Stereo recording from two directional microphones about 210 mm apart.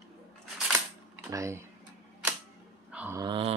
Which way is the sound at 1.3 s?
15° right (ahead or behind).